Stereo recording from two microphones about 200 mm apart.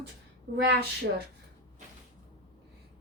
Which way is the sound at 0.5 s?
55° right (ahead or behind).